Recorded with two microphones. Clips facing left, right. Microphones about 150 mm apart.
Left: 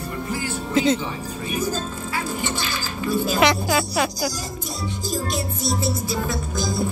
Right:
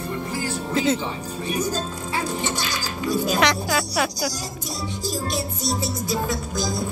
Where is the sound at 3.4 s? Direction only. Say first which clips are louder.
Left 2 dB; centre (ahead or behind).